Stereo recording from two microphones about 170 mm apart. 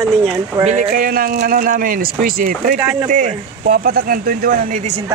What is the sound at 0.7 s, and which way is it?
Speech, 50° right (ahead or behind).